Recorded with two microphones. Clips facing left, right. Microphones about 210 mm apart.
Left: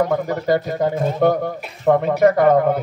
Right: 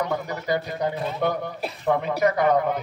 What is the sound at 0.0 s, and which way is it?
Speech, 50° left (ahead or behind).